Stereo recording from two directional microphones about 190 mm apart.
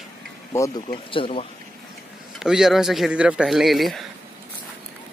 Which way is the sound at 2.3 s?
5° right (ahead or behind).